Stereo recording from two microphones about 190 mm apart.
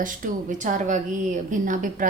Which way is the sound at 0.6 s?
40° right (ahead or behind).